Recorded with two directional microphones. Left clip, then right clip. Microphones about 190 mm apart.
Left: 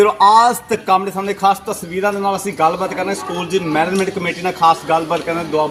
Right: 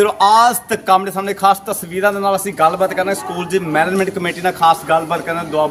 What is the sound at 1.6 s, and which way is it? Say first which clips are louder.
A man's voice: right 2 dB; 5° right (ahead or behind).